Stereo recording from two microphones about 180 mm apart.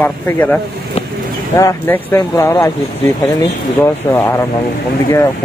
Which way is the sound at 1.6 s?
15° left (ahead or behind).